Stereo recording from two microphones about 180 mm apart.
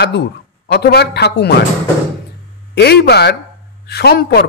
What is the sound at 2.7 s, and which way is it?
A man's voice, 65° left (ahead or behind).